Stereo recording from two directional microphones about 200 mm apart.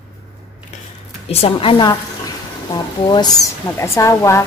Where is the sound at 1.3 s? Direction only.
30° left (ahead or behind).